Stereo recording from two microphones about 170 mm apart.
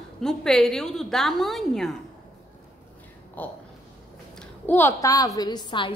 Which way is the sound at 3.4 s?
10° left (ahead or behind).